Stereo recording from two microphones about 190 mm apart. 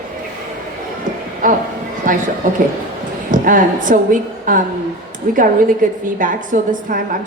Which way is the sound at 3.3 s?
45° right (ahead or behind).